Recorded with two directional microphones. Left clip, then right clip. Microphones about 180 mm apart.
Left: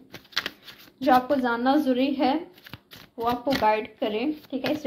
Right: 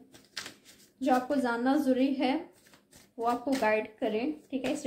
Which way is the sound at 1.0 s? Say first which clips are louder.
Left 7 dB; 15° left (ahead or behind).